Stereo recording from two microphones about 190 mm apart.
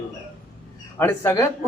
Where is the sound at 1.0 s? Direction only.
10° left (ahead or behind).